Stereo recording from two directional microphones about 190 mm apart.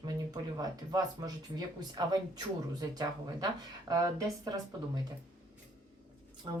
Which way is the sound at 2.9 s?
20° right (ahead or behind).